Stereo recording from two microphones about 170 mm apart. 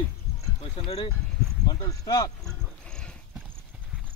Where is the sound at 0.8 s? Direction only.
35° left (ahead or behind).